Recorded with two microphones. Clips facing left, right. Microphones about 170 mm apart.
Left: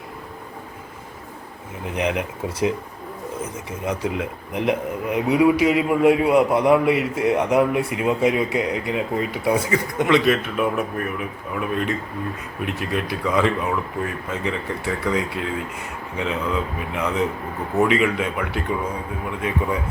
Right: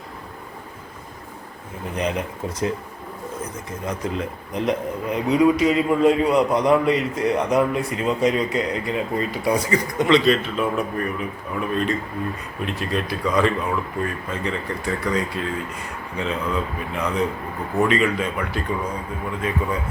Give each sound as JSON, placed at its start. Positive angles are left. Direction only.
{"t": 1.9, "sound": "a man's voice", "side_deg": 10}